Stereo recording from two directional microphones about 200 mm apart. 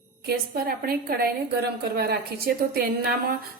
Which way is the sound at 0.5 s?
50° right (ahead or behind).